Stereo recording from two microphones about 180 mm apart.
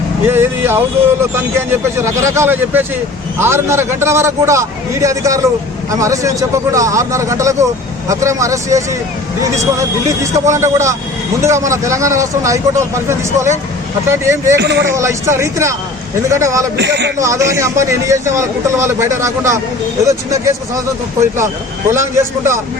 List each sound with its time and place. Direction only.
0.3 s a man's voice: 10° right (ahead or behind)
10.3 s a man's voice: 15° right (ahead or behind)
14.6 s a man's voice: 70° right (ahead or behind)
14.8 s a man's voice: 15° right (ahead or behind)
16.7 s a man's voice: 70° right (ahead or behind)
17.2 s a man's voice: 15° right (ahead or behind)
21.9 s a man's voice: 15° right (ahead or behind)